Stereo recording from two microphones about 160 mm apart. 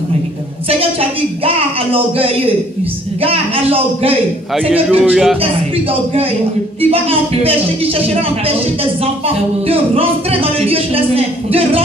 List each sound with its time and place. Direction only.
1.4 s a man's voice: 35° right (ahead or behind)
4.6 s a man's voice: 5° right (ahead or behind)
5.4 s a man's voice: 35° right (ahead or behind)
9.7 s a man's voice: 35° right (ahead or behind)